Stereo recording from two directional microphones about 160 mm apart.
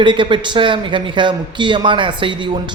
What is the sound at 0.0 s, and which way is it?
Speech, 30° right (ahead or behind).